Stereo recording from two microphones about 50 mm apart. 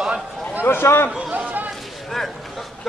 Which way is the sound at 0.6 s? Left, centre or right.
Left.